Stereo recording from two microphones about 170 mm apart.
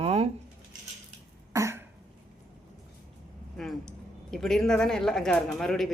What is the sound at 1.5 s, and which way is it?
Cough, 15° right (ahead or behind).